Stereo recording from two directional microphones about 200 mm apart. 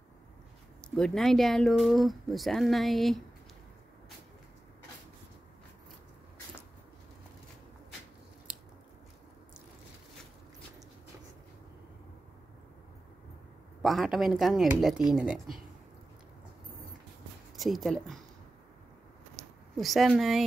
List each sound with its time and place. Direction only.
0.8 s speech: 5° left (ahead or behind)
8.5 s biting: 5° right (ahead or behind)
13.8 s speech: centre (ahead or behind)
17.6 s speech: centre (ahead or behind)
19.3 s a sound: centre (ahead or behind)